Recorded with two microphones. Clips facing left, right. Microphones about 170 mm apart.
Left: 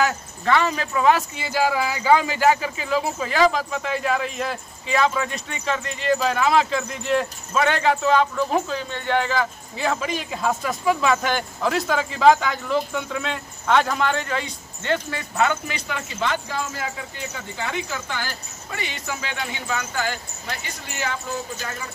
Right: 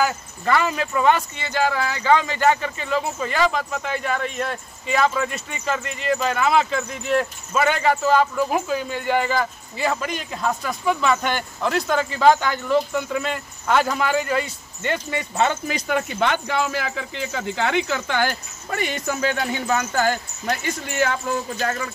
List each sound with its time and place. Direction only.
0.0 s speech: centre (ahead or behind); by 15.4 s 20° right (ahead or behind)
15.9 s speech: 60° right (ahead or behind)
18.7 s speech: 50° right (ahead or behind)